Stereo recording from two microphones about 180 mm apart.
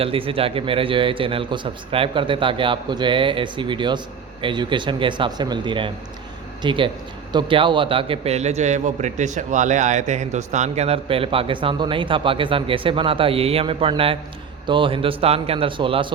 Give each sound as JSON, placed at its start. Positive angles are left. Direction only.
{"t": 0.0, "sound": "a man's voice", "side_deg": -30}